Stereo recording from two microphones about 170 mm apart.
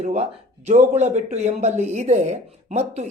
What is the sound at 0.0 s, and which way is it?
A woman's voice, 40° right (ahead or behind).